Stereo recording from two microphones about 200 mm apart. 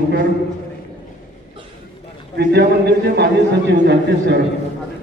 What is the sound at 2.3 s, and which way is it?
A man's voice, 55° right (ahead or behind).